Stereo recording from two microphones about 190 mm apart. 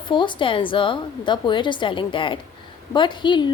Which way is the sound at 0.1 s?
25° left (ahead or behind).